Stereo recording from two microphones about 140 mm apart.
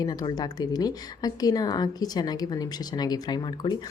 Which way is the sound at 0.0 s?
30° left (ahead or behind).